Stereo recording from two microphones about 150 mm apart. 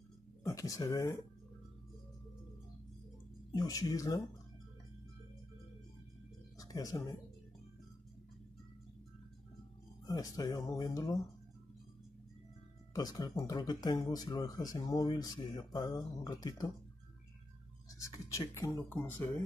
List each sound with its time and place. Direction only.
0.4 s speech: 20° left (ahead or behind)
3.5 s speech: 25° left (ahead or behind)
6.6 s speech: 25° left (ahead or behind)
10.0 s speech: 25° left (ahead or behind)
12.9 s speech: 25° left (ahead or behind)
18.3 s speech: 20° left (ahead or behind)